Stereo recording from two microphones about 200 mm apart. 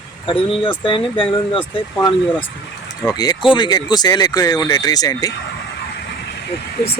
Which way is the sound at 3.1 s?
20° left (ahead or behind).